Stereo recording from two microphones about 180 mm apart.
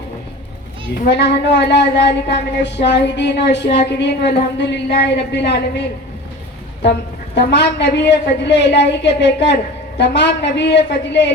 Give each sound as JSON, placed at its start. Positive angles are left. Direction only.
{"t": 1.0, "sound": "a woman's voice", "side_deg": 70}
{"t": 7.3, "sound": "a woman's voice", "side_deg": 70}